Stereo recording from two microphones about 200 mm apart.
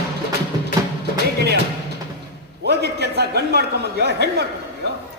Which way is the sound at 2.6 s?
55° right (ahead or behind).